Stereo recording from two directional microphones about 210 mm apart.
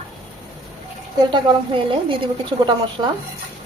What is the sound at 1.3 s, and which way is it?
Speech, 25° right (ahead or behind).